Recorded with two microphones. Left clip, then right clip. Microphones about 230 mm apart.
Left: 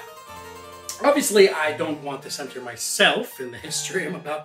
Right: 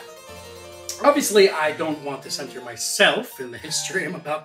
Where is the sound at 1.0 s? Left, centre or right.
Centre.